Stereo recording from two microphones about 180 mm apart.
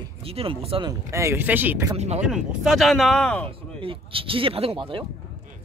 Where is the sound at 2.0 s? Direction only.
35° right (ahead or behind).